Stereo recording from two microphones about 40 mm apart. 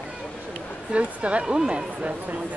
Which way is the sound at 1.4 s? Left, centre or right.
Centre.